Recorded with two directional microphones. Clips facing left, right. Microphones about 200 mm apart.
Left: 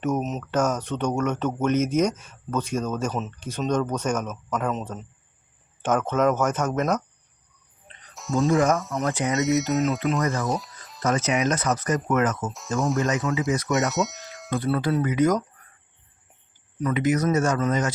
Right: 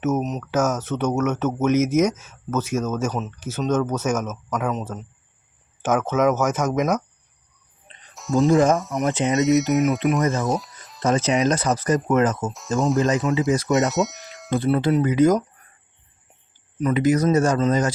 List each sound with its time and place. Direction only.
0.0 s speech: centre (ahead or behind)
8.1 s music: centre (ahead or behind)
8.4 s speech: 35° right (ahead or behind)
9.0 s speech: 20° right (ahead or behind)
9.4 s speech: centre (ahead or behind)
11.0 s speech: 30° right (ahead or behind)
12.5 s speech: centre (ahead or behind)
13.0 s speech: 30° right (ahead or behind)
13.9 s speech: centre (ahead or behind)
14.5 s speech: 25° right (ahead or behind)
16.9 s speech: 35° right (ahead or behind)